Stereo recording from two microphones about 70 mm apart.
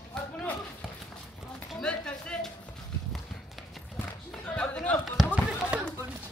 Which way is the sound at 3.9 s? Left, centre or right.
Centre.